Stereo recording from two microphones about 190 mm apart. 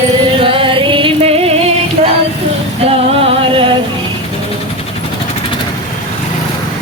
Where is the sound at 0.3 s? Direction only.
30° right (ahead or behind).